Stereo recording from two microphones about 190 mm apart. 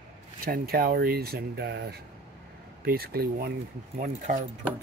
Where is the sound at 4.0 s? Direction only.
40° right (ahead or behind).